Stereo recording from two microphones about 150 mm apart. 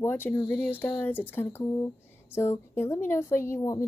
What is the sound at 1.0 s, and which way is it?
A woman's voice, 10° left (ahead or behind).